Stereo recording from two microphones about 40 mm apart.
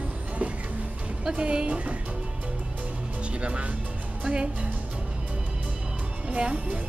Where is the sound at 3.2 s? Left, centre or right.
Right.